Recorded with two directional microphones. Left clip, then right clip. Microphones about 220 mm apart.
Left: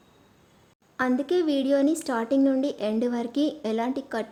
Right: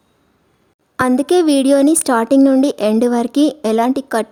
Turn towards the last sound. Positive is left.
turn(degrees=-50)  # may be behind; listen again after turning